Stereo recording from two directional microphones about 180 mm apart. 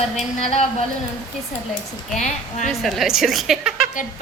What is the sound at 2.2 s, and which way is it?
Speech, 40° left (ahead or behind).